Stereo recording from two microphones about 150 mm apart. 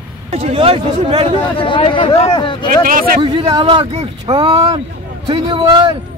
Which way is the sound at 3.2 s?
35° right (ahead or behind).